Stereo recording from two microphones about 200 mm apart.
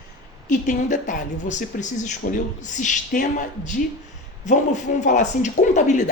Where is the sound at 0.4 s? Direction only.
40° left (ahead or behind).